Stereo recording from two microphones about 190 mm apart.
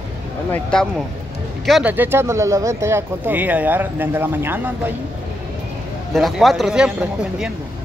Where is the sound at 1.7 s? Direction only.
5° right (ahead or behind).